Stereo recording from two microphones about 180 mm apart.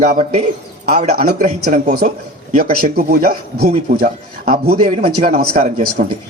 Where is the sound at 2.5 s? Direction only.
55° right (ahead or behind).